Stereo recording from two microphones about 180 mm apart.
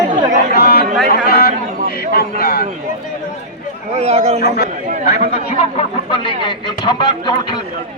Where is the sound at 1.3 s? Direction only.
60° left (ahead or behind).